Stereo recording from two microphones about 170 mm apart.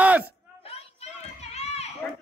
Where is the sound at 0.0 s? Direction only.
10° right (ahead or behind).